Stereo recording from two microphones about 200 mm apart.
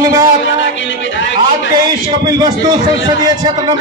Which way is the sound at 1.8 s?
20° right (ahead or behind).